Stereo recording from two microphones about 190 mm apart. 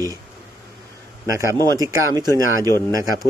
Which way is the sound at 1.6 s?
20° right (ahead or behind).